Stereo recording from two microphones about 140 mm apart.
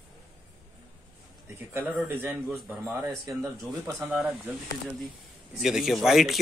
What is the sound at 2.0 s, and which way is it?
A man's voice, 15° right (ahead or behind).